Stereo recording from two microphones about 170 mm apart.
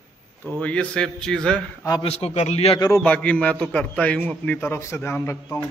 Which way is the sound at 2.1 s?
40° left (ahead or behind).